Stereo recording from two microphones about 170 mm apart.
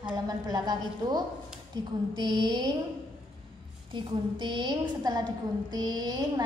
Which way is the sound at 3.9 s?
25° right (ahead or behind).